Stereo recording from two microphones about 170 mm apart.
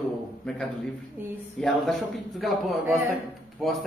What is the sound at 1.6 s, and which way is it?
Speech, 5° left (ahead or behind).